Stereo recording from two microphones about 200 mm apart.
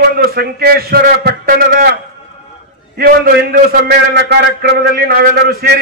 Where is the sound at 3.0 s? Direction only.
50° right (ahead or behind).